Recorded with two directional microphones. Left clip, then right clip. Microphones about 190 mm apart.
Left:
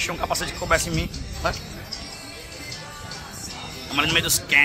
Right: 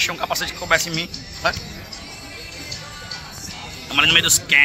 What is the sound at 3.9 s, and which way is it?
Speech, 5° left (ahead or behind).